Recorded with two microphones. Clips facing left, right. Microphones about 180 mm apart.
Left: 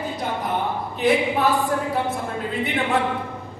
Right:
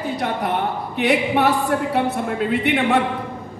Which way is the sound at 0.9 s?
75° right (ahead or behind).